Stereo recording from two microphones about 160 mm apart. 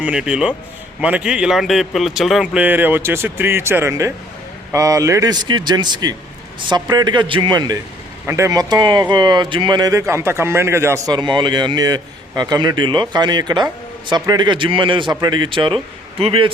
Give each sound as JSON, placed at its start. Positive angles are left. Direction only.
{"t": 0.0, "sound": "a man's voice", "side_deg": -5}